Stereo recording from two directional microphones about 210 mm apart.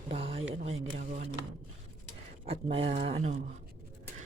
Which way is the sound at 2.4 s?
25° right (ahead or behind).